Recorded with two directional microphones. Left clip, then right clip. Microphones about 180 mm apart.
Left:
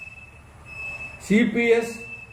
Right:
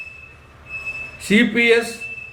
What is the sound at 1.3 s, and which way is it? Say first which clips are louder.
Speech: right 5 dB; 40° right (ahead or behind).